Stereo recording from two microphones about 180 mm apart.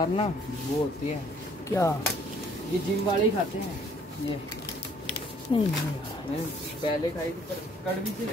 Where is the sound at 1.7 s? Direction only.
15° left (ahead or behind).